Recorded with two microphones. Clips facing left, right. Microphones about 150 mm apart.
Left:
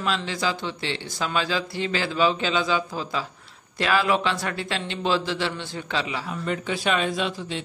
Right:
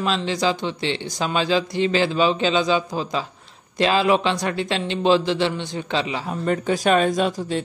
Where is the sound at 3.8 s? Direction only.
20° right (ahead or behind).